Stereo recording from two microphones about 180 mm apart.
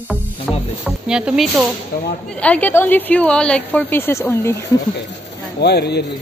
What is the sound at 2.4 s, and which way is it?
A woman's voice, 10° left (ahead or behind).